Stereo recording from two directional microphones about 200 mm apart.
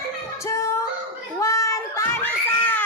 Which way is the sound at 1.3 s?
15° left (ahead or behind).